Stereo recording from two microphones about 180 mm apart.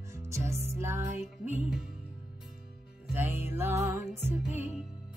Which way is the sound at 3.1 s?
10° right (ahead or behind).